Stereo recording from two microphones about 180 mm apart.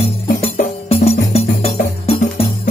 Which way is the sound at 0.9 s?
35° left (ahead or behind).